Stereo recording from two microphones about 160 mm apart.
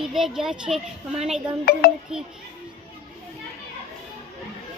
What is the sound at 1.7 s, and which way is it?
Speech, 80° left.